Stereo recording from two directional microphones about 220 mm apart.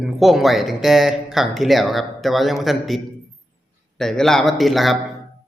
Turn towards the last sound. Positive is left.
turn(degrees=0)  # may be behind; listen again after turning